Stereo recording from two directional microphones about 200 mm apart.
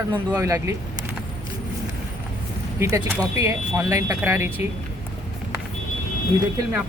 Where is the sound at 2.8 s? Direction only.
15° right (ahead or behind).